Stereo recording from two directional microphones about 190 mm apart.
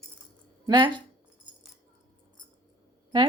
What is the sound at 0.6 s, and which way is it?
Speech, 25° right (ahead or behind).